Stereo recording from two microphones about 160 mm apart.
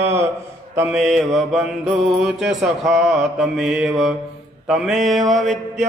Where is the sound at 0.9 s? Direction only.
Centre (ahead or behind).